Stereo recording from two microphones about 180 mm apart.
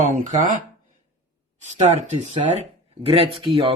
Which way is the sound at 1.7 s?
40° right (ahead or behind).